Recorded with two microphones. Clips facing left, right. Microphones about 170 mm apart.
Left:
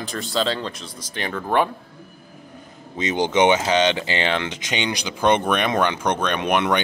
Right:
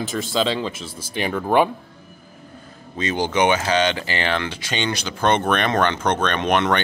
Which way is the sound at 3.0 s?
20° left (ahead or behind).